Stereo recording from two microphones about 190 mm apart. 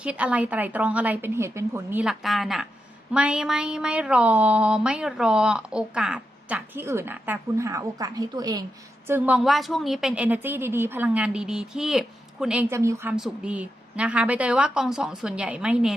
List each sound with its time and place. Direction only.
0.0 s a woman's voice: 5° right (ahead or behind)
9.0 s a woman's voice: 10° right (ahead or behind)
13.1 s a woman's voice: 5° right (ahead or behind)